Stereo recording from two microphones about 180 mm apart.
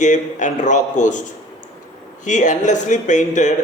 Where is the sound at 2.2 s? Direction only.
45° left (ahead or behind).